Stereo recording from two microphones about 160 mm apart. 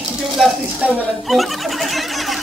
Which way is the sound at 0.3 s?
Centre (ahead or behind).